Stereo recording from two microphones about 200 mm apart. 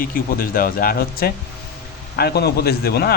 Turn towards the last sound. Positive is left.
turn(degrees=50)  # may be behind; listen again after turning